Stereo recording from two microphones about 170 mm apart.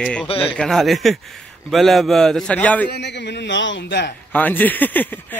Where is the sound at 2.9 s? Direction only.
90° left.